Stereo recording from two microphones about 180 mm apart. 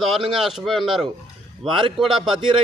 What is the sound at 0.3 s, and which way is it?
Speech, centre (ahead or behind).